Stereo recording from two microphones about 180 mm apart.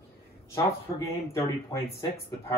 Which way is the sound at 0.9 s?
15° left (ahead or behind).